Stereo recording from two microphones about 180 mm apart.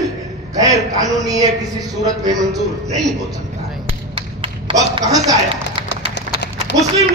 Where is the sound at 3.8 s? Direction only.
30° right (ahead or behind).